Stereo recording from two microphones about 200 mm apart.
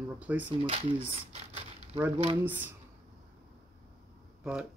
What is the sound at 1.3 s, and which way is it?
Crumpling, 35° right (ahead or behind).